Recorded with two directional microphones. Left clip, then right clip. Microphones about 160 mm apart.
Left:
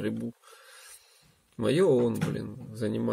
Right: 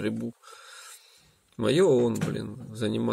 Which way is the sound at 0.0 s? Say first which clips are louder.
Right 2 dB; 20° right (ahead or behind).